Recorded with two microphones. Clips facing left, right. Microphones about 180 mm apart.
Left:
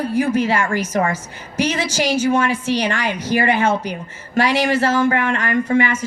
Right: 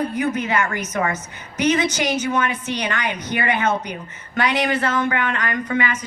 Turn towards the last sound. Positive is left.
turn(degrees=30)  # may be behind; listen again after turning